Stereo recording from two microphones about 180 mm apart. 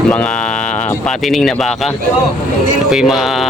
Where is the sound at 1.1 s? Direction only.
Centre (ahead or behind).